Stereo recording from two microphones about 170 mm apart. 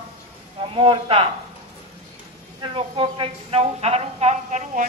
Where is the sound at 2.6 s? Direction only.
30° right (ahead or behind).